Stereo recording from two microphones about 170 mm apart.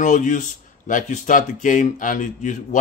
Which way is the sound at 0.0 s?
50° left (ahead or behind).